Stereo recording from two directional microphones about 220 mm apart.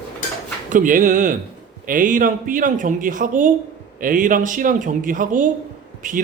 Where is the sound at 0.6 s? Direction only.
35° right (ahead or behind).